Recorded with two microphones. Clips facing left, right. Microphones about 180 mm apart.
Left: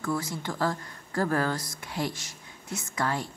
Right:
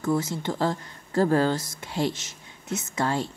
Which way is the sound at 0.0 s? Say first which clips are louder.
Right 5 dB; 25° right (ahead or behind).